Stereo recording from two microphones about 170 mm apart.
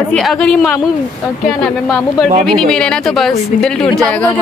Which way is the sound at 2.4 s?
5° left (ahead or behind).